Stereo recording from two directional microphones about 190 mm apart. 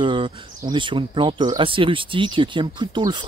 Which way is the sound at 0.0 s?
25° right (ahead or behind).